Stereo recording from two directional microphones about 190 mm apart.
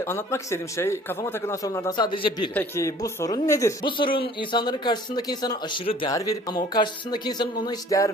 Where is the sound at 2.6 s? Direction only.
15° left (ahead or behind).